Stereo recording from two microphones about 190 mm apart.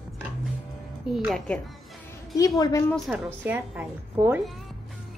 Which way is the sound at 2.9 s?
Centre (ahead or behind).